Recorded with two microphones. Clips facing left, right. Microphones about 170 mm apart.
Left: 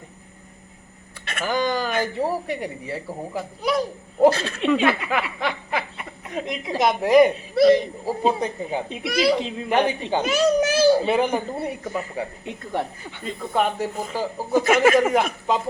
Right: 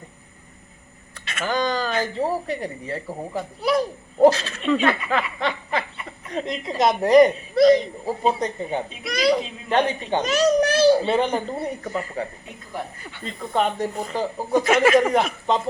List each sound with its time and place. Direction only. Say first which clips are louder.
1.4 s a woman's voice: even; 10° left (ahead or behind)
4.3 s speech: even; 55° left (ahead or behind)
4.7 s a woman's voice: right 1 dB; 10° left (ahead or behind)
13.2 s speech: even; 5° left (ahead or behind)